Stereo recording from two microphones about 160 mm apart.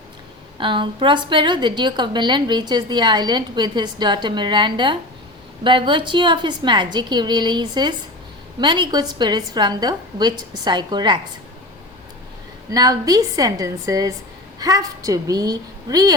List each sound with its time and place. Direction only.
0.6 s a woman's voice: 30° right (ahead or behind)
12.7 s a woman's voice: 25° right (ahead or behind)